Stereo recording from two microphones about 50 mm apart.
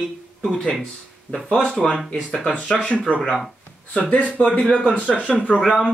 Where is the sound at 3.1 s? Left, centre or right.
Left.